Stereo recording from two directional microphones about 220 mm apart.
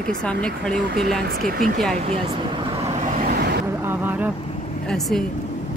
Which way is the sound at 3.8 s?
10° right (ahead or behind).